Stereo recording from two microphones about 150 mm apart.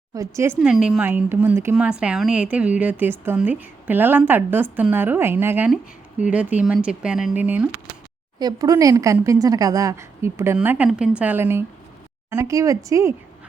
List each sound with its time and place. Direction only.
0.1 s speech: 20° right (ahead or behind)
0.6 s a woman's voice: 5° right (ahead or behind)
8.4 s a woman's voice: 25° right (ahead or behind)